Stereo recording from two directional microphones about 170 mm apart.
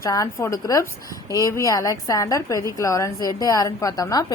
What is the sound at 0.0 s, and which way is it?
A woman's voice, 20° left (ahead or behind).